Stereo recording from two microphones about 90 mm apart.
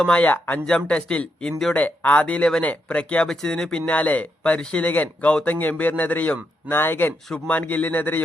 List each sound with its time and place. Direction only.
0.0 s speech: 15° left (ahead or behind)
1.7 s a man's voice: 20° left (ahead or behind)